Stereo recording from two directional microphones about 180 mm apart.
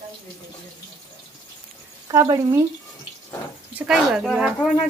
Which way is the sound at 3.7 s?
5° right (ahead or behind).